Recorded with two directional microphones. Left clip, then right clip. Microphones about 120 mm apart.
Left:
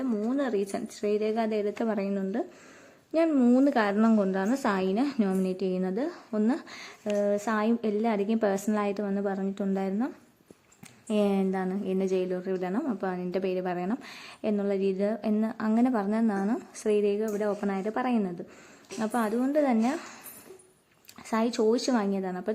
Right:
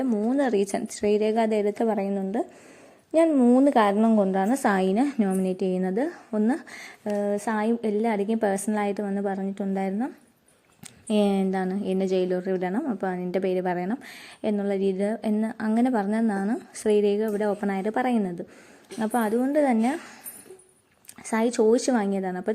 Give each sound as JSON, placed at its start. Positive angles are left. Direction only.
{"t": 0.2, "sound": "a woman's voice", "side_deg": -40}
{"t": 1.8, "sound": "a woman's voice", "side_deg": -15}
{"t": 3.5, "sound": "a woman's voice", "side_deg": -30}
{"t": 3.9, "sound": "a woman's voice", "side_deg": -5}
{"t": 4.4, "sound": "a woman's voice", "side_deg": -25}
{"t": 4.7, "sound": "a woman's voice", "side_deg": -45}
{"t": 5.4, "sound": "a woman's voice", "side_deg": -30}
{"t": 7.2, "sound": "a woman's voice", "side_deg": -5}
{"t": 11.1, "sound": "a woman's voice", "side_deg": -30}
{"t": 21.2, "sound": "a woman's voice", "side_deg": -25}